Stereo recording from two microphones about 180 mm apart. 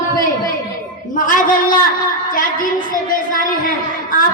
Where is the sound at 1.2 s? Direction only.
50° left (ahead or behind).